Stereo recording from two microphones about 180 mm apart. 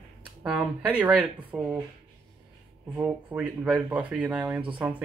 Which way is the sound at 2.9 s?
10° right (ahead or behind).